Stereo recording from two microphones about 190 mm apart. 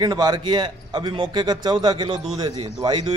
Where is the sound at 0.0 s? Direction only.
20° right (ahead or behind).